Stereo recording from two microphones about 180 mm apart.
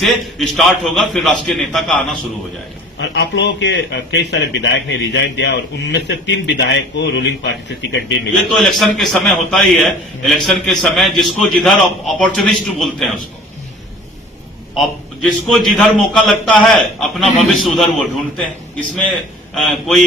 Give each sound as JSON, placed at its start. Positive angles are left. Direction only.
{"t": 0.0, "sound": "a man's voice", "side_deg": 0}
{"t": 3.0, "sound": "a man's voice", "side_deg": 70}
{"t": 8.4, "sound": "a man's voice", "side_deg": 0}
{"t": 14.8, "sound": "a man's voice", "side_deg": 0}
{"t": 18.9, "sound": "a man's voice", "side_deg": 5}